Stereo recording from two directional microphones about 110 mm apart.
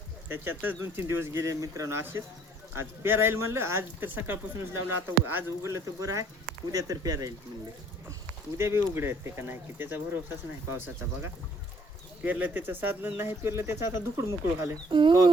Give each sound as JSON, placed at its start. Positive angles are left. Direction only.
{"t": 0.3, "sound": "speech", "side_deg": -20}
{"t": 8.5, "sound": "speech", "side_deg": -25}
{"t": 14.8, "sound": "speech", "side_deg": -50}